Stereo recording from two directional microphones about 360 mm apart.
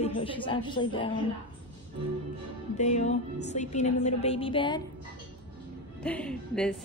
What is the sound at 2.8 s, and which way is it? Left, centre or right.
A woman's voice, centre.